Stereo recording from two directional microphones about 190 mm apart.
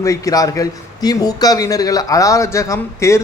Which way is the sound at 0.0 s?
15° left (ahead or behind).